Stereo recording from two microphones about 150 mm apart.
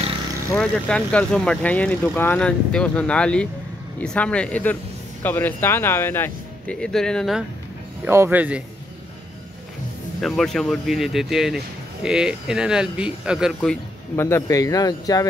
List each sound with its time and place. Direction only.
0.6 s speech: 5° left (ahead or behind)
8.0 s speech: 15° right (ahead or behind)
10.2 s speech: centre (ahead or behind)
14.1 s speech: 15° left (ahead or behind)